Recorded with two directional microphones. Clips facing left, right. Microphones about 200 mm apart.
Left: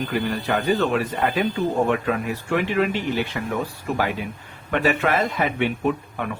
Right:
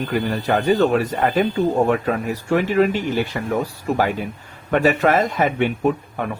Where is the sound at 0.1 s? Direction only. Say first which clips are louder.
Right 5 dB; 45° right (ahead or behind).